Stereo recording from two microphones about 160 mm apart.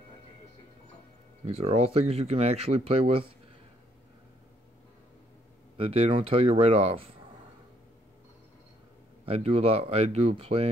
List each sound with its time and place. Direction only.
1.4 s speech: 40° right (ahead or behind)
5.8 s speech: 35° right (ahead or behind)
9.2 s speech: 35° right (ahead or behind)